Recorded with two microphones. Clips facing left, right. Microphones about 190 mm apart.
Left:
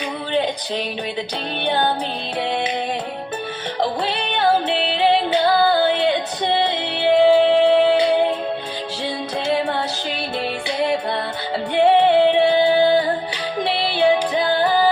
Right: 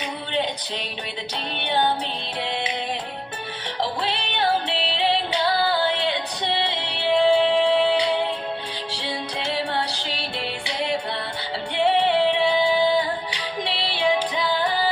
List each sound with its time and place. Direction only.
3.8 s music: 50° left (ahead or behind)
9.4 s music: 50° left (ahead or behind)